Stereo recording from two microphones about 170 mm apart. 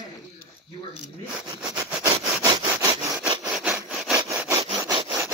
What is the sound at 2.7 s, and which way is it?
Sawing, 5° right (ahead or behind).